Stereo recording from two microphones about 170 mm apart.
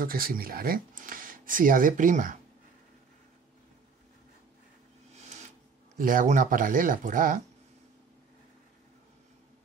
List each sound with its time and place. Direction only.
0.0 s speech: 60° right (ahead or behind)
5.9 s speech: 50° right (ahead or behind)